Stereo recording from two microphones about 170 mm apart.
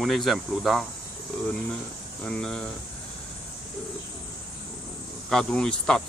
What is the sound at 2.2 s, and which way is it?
Speech, 5° left (ahead or behind).